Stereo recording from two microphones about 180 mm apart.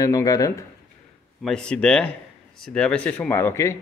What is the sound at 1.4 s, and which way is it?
Speech, 5° left (ahead or behind).